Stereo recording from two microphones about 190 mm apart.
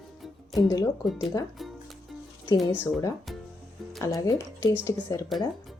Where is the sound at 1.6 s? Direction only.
Centre (ahead or behind).